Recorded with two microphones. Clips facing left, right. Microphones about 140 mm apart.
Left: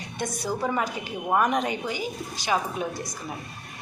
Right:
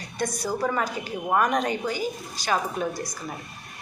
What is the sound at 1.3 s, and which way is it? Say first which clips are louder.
Speech: even; 5° left (ahead or behind).